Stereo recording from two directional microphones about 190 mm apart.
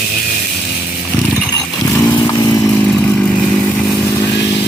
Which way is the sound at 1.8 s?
15° left (ahead or behind).